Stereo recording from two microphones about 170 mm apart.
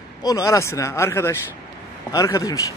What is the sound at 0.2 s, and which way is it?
Speech, 20° left (ahead or behind).